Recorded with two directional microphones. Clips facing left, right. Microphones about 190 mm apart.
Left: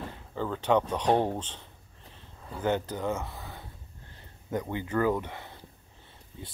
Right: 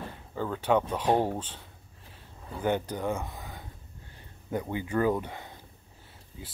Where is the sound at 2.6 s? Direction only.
15° right (ahead or behind).